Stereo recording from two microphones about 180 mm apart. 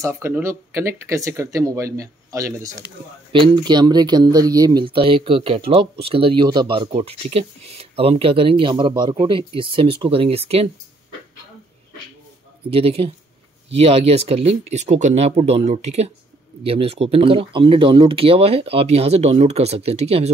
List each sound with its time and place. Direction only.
0.0 s a man's voice: 15° right (ahead or behind); by 10.7 s 35° right (ahead or behind)
12.6 s speech: 30° right (ahead or behind)